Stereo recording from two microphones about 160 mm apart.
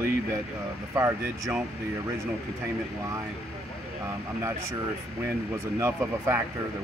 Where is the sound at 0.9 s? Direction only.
20° right (ahead or behind).